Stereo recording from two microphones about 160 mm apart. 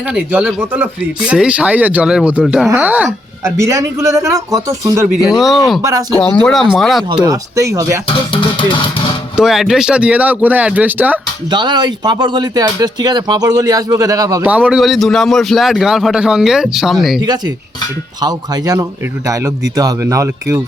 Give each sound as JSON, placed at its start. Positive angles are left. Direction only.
{"t": 0.1, "sound": "speech", "side_deg": -10}
{"t": 3.4, "sound": "speech", "side_deg": -20}
{"t": 5.0, "sound": "a man's voice", "side_deg": -5}
{"t": 5.8, "sound": "speech", "side_deg": -20}
{"t": 6.4, "sound": "a man's voice", "side_deg": 0}
{"t": 7.3, "sound": "speech", "side_deg": -20}
{"t": 9.3, "sound": "speech", "side_deg": 0}
{"t": 11.5, "sound": "speech", "side_deg": -30}
{"t": 14.4, "sound": "a man's voice", "side_deg": -10}
{"t": 18.2, "sound": "speech", "side_deg": -25}